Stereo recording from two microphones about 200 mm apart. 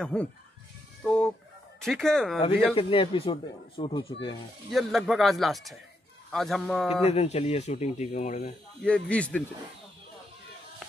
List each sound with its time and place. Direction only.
0.0 s speech: 5° left (ahead or behind)
1.0 s fowl: 5° left (ahead or behind)
1.8 s speech: centre (ahead or behind)
2.7 s speech: 30° left (ahead or behind)
4.6 s speech: centre (ahead or behind)
6.9 s speech: 30° left (ahead or behind)
8.8 s speech: 5° left (ahead or behind)